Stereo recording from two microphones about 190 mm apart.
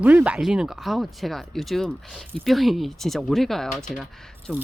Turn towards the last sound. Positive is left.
turn(degrees=5)  # may be behind; listen again after turning